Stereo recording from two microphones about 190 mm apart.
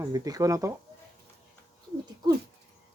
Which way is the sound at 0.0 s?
20° right (ahead or behind).